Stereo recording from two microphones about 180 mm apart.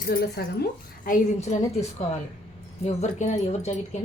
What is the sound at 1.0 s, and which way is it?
Speech, 45° left (ahead or behind).